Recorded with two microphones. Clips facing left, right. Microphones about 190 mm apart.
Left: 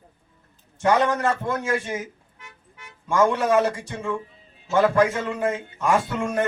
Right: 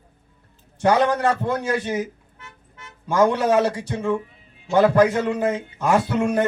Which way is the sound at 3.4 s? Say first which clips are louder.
Right 2 dB; 35° right (ahead or behind).